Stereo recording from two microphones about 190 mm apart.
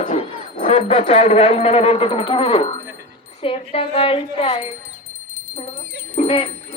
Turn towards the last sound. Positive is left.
turn(degrees=30)  # may be behind; listen again after turning